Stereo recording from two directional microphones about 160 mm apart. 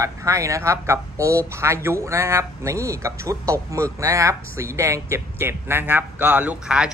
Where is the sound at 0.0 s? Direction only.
20° right (ahead or behind).